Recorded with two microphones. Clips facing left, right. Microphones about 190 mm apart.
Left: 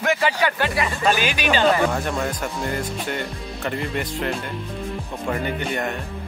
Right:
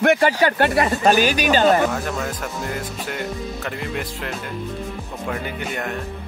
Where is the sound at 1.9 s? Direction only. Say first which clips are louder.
Left 1 dB; centre (ahead or behind).